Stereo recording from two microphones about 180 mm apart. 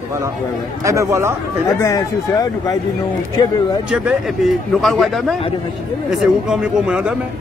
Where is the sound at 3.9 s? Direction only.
5° right (ahead or behind).